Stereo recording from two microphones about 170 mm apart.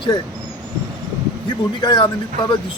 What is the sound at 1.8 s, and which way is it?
Speech, 25° left (ahead or behind).